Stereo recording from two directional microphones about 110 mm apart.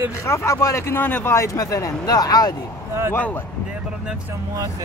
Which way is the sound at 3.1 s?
20° left (ahead or behind).